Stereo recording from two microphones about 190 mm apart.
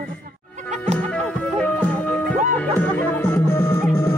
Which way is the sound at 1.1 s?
5° left (ahead or behind).